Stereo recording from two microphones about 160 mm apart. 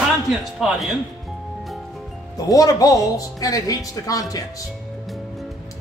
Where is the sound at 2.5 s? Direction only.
20° left (ahead or behind).